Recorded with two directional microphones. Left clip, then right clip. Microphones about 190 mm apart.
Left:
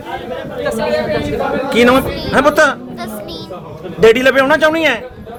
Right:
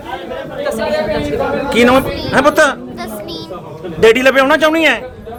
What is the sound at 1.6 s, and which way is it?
A man's voice, centre (ahead or behind).